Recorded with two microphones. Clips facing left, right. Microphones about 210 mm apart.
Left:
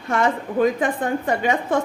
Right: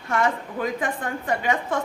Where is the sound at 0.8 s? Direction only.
25° left (ahead or behind).